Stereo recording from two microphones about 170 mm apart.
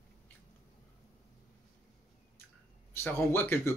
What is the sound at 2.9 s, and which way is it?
Speech, 10° left (ahead or behind).